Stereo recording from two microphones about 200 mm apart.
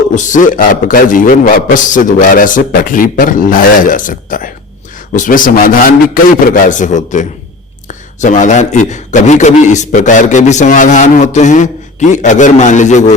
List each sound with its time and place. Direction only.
0.1 s a man's voice: 40° left (ahead or behind)